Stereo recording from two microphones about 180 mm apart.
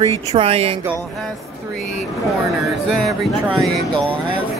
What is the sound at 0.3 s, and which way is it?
Speech, 35° right (ahead or behind).